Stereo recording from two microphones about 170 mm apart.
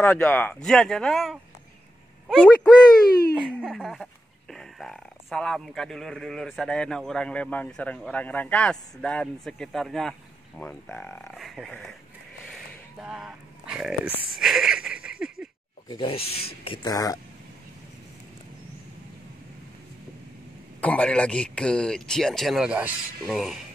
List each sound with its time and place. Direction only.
0.0 s speech: 15° left (ahead or behind)
2.2 s a sound: centre (ahead or behind)
3.3 s speech: 5° right (ahead or behind)
15.9 s speech: 30° left (ahead or behind)
20.8 s speech: 5° left (ahead or behind)